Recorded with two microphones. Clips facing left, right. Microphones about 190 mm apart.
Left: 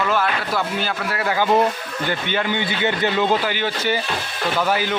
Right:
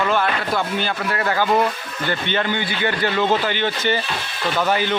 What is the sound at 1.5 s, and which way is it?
Speech, 20° left (ahead or behind).